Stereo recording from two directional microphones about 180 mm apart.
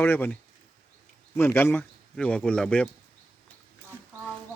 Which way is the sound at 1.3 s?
10° left (ahead or behind).